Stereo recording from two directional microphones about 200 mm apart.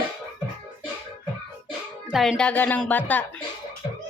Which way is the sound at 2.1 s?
Centre (ahead or behind).